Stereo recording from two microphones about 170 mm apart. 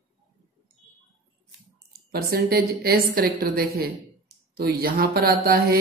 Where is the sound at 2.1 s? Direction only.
65° right (ahead or behind).